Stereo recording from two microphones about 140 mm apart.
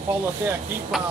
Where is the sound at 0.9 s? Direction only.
Centre (ahead or behind).